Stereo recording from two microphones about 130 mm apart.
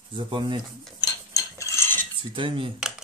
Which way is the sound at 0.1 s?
35° right (ahead or behind).